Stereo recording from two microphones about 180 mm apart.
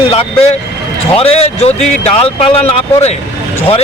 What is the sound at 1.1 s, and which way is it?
A man's voice, 35° left (ahead or behind).